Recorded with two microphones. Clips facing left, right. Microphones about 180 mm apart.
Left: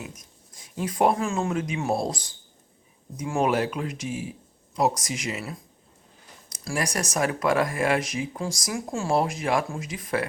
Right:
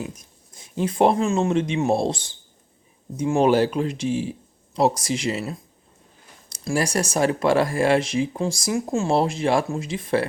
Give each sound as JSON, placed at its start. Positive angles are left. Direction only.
{"t": 0.8, "sound": "speech", "side_deg": -25}